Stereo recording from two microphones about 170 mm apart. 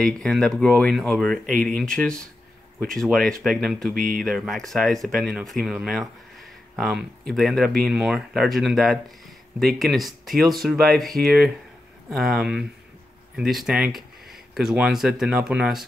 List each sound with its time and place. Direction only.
0.0 s speech: 5° left (ahead or behind)
3.9 s speech: 55° right (ahead or behind)
4.2 s speech: centre (ahead or behind)